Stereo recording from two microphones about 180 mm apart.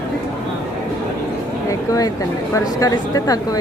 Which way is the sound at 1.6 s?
20° left (ahead or behind).